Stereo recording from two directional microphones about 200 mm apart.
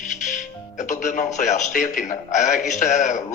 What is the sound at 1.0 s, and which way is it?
A man's voice, 40° left (ahead or behind).